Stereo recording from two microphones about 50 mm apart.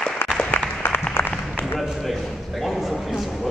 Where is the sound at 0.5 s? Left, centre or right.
Left.